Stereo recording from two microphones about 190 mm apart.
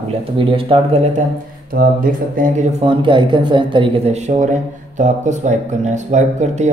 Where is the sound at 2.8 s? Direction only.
25° right (ahead or behind).